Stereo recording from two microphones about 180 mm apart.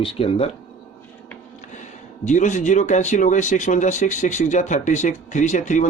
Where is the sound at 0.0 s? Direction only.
30° left (ahead or behind).